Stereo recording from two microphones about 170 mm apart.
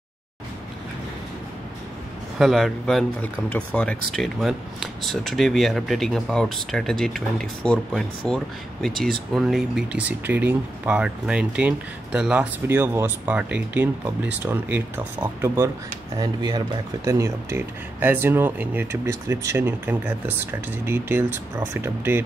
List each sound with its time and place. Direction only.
2.3 s speech: centre (ahead or behind)